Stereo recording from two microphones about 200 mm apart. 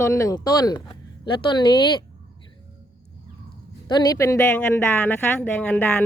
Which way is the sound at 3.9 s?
20° left (ahead or behind).